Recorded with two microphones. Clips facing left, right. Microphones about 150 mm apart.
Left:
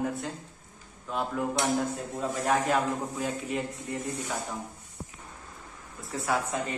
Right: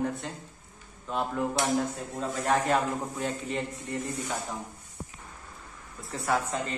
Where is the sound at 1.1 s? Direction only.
Centre (ahead or behind).